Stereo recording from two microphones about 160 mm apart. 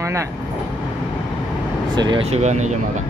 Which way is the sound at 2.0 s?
30° right (ahead or behind).